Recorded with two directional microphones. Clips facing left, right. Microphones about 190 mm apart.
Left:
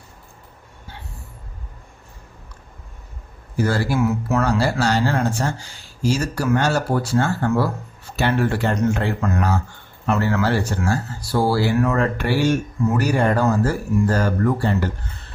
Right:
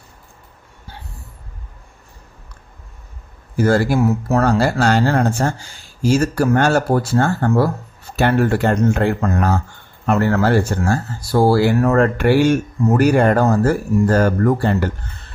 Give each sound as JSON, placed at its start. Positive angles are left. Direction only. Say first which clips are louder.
{"t": 3.6, "sound": "speech", "louder": "right 5 dB", "side_deg": -50}
{"t": 4.0, "sound": "speech", "louder": "right 3 dB", "side_deg": -35}
{"t": 4.4, "sound": "speech", "louder": "right 5 dB", "side_deg": -55}